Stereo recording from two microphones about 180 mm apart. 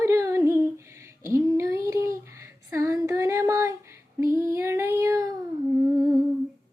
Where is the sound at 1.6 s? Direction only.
15° right (ahead or behind).